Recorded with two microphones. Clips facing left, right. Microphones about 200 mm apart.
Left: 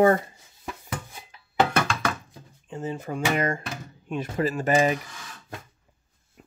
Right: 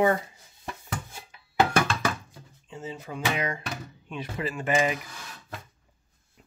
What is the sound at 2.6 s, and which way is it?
Speech, 50° left (ahead or behind).